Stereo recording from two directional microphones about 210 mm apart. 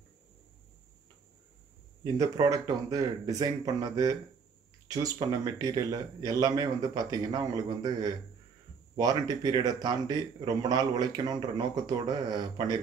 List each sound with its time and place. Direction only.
2.0 s speech: 15° right (ahead or behind)